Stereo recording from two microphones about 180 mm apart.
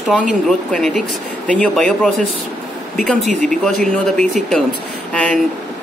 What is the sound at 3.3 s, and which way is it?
Speech, 45° right (ahead or behind).